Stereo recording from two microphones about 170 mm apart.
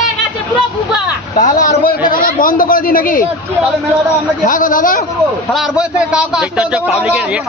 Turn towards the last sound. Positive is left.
turn(degrees=-5)  # may be behind; listen again after turning